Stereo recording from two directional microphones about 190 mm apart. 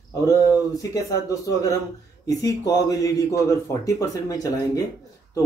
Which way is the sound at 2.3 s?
20° left (ahead or behind).